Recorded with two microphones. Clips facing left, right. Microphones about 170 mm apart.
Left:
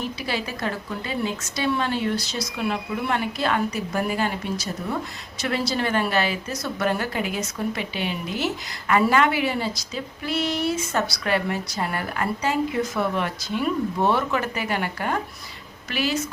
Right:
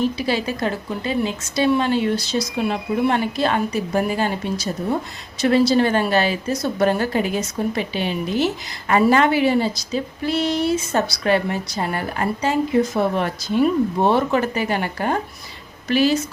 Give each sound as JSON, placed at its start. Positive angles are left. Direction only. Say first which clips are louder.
{"t": 0.2, "sound": "a woman's voice", "louder": "right 6 dB", "side_deg": -25}
{"t": 5.4, "sound": "a woman's voice", "louder": "right 9 dB", "side_deg": -30}